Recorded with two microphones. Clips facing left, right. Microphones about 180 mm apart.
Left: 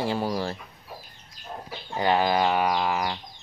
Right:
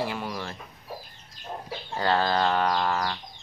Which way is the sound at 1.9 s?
15° left (ahead or behind).